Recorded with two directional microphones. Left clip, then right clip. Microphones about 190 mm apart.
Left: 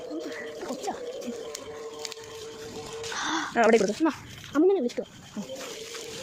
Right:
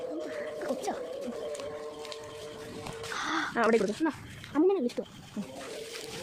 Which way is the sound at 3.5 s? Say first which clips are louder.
Left 6 dB; 20° left (ahead or behind).